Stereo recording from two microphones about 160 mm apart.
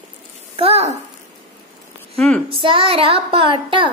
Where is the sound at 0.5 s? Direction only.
40° right (ahead or behind).